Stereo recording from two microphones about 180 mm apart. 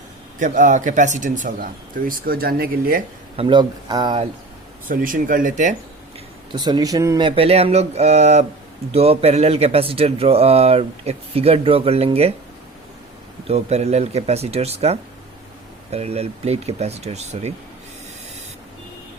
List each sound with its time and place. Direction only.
0.3 s speech: 45° right (ahead or behind)
3.3 s speech: 30° right (ahead or behind)
4.9 s speech: 50° right (ahead or behind)
6.5 s speech: 25° right (ahead or behind)
13.5 s speech: 35° right (ahead or behind)